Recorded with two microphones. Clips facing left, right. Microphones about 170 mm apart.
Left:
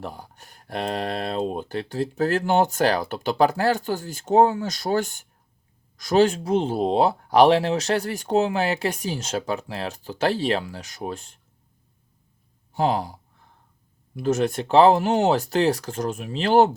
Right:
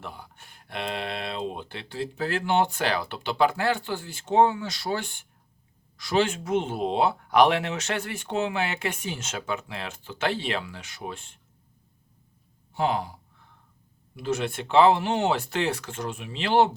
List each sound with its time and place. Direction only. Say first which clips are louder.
0.0 s speech: left 5 dB; 40° left (ahead or behind)
12.7 s speech: left 3 dB; 35° left (ahead or behind)
14.2 s speech: left 6 dB; 45° left (ahead or behind)